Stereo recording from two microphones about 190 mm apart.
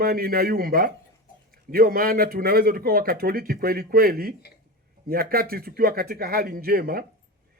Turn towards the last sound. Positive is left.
turn(degrees=-50)  # may be behind; listen again after turning